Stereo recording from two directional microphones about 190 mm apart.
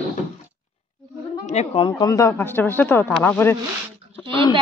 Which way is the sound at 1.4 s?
35° left (ahead or behind).